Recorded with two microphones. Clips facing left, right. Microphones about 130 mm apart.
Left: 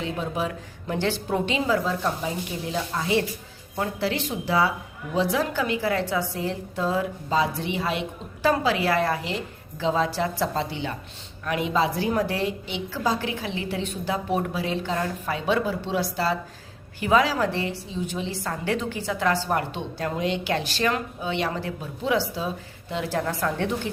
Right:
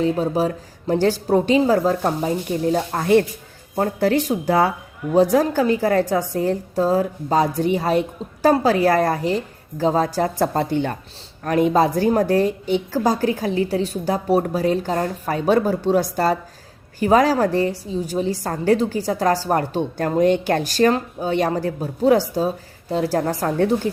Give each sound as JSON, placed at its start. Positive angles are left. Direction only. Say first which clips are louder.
{"t": 0.0, "sound": "a woman's voice", "louder": "right 9 dB", "side_deg": -40}